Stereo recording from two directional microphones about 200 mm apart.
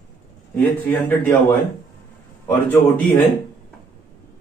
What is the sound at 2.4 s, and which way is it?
Speech, 10° left (ahead or behind).